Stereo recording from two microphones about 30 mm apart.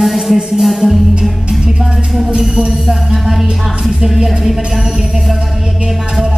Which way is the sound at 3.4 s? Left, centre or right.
Centre.